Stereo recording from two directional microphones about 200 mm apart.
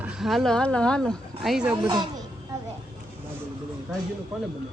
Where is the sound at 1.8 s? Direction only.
20° right (ahead or behind).